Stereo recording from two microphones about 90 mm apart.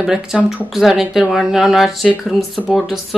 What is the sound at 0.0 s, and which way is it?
Speech, 5° right (ahead or behind).